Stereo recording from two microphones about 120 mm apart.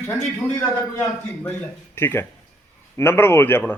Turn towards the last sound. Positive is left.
turn(degrees=20)  # may be behind; listen again after turning